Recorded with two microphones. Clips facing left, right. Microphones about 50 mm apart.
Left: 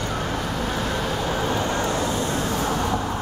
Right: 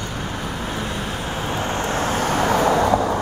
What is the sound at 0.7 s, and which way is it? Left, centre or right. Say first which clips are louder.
Vehicle: left 1 dB; centre.